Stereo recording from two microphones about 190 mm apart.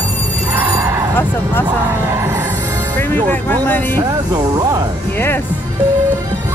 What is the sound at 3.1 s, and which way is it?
Speech, 10° left (ahead or behind).